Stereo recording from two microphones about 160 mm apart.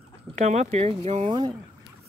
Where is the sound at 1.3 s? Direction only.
30° right (ahead or behind).